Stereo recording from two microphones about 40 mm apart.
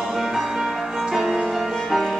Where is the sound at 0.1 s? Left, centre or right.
Centre.